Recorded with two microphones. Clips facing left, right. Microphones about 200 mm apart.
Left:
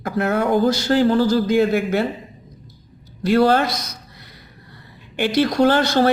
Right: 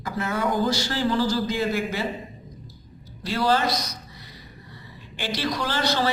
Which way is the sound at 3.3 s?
60° left (ahead or behind).